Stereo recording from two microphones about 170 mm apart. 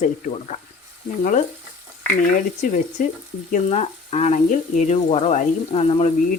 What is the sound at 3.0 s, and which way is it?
Speech, 50° left (ahead or behind).